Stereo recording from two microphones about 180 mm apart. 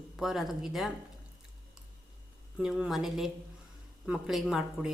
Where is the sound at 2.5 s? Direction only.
5° right (ahead or behind).